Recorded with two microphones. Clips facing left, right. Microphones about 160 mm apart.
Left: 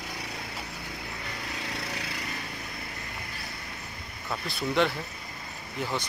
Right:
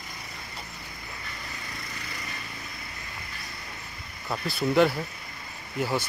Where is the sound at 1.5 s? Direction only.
75° left (ahead or behind).